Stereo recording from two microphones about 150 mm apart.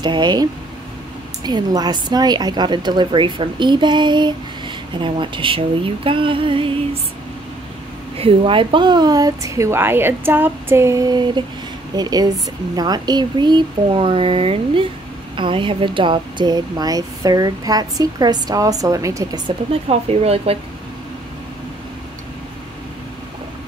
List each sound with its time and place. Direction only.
0.0 s speech: 30° right (ahead or behind)
8.2 s speech: 35° right (ahead or behind)
19.9 s speech: 45° right (ahead or behind)